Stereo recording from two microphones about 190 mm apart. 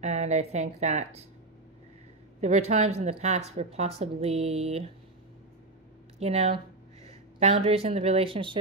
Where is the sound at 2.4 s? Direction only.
35° right (ahead or behind).